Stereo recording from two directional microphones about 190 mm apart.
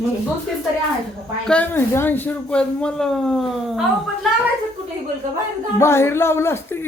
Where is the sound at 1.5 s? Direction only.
10° left (ahead or behind).